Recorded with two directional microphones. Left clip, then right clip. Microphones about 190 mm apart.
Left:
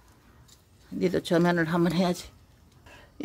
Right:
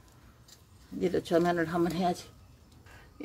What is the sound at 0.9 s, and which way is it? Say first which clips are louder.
Speech: left 2 dB; 35° left (ahead or behind).